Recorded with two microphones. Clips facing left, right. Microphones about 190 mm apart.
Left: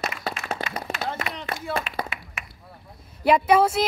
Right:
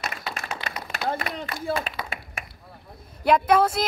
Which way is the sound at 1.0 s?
45° right (ahead or behind).